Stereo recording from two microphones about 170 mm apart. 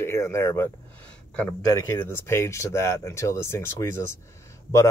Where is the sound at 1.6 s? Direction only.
20° left (ahead or behind).